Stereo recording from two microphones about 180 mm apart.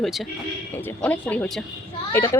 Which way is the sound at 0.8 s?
10° left (ahead or behind).